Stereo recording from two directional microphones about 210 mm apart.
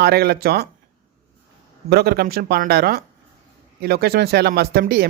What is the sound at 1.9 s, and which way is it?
Speech, 50° right (ahead or behind).